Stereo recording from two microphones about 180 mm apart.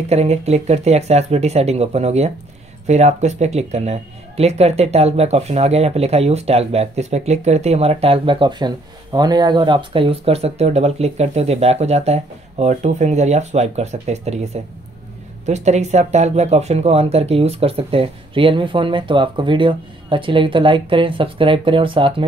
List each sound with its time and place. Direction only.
0.1 s speech: 35° right (ahead or behind)